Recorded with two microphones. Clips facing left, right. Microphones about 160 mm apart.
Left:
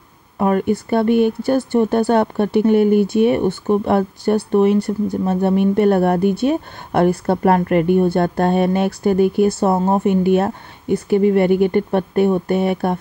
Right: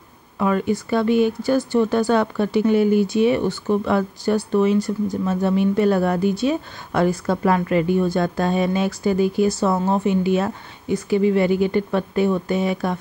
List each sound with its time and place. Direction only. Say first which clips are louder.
0.4 s speech: left 3 dB; 50° left (ahead or behind)